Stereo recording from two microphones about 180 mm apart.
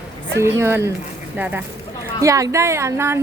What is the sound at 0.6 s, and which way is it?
A woman's voice, 15° right (ahead or behind).